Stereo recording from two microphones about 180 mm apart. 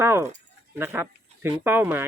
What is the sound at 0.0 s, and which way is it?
Speech, 15° right (ahead or behind).